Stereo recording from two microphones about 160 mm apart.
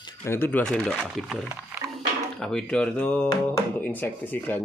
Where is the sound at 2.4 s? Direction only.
5° left (ahead or behind).